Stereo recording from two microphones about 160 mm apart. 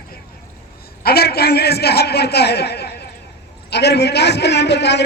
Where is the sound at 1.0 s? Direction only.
75° left (ahead or behind).